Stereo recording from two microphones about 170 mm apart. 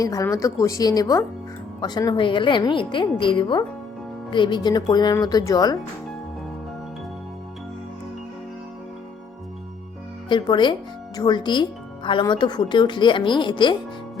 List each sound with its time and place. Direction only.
0.0 s speech: 20° left (ahead or behind)
10.2 s speech: 25° left (ahead or behind)